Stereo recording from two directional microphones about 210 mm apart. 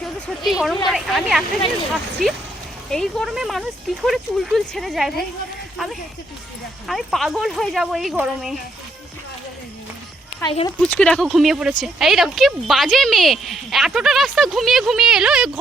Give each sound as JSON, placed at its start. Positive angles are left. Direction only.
{"t": 0.4, "sound": "speech", "side_deg": 0}
{"t": 2.9, "sound": "speech", "side_deg": 0}
{"t": 10.4, "sound": "speech", "side_deg": 25}
{"t": 10.9, "sound": "speech", "side_deg": 5}